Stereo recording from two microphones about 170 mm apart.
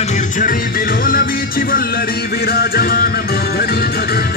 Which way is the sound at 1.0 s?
60° left (ahead or behind).